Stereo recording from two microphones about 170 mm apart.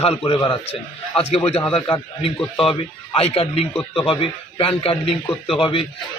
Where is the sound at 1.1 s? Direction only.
35° left (ahead or behind).